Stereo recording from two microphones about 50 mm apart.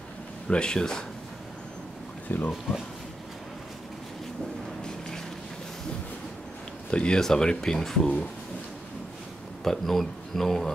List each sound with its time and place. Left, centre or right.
0.5 s speech: centre
2.2 s speech: left
6.9 s speech: left
9.6 s speech: centre